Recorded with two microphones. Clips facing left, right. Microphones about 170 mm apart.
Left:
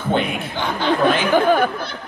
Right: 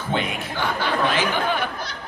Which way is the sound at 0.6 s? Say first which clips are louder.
Left 4 dB; 20° left (ahead or behind).